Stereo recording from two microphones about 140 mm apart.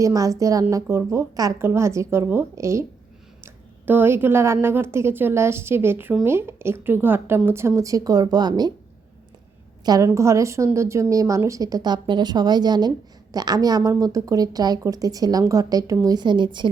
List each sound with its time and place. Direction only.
0.0 s a woman's voice: 25° right (ahead or behind)
9.8 s a woman's voice: 25° right (ahead or behind)